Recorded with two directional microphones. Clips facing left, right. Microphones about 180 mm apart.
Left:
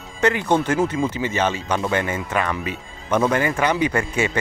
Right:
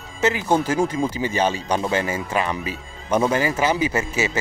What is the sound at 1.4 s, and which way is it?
Speech, 35° right (ahead or behind).